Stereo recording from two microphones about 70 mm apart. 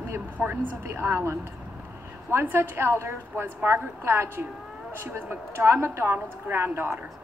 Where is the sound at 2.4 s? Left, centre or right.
Right.